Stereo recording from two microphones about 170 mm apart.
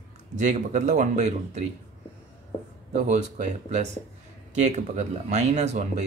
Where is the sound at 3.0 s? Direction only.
45° right (ahead or behind).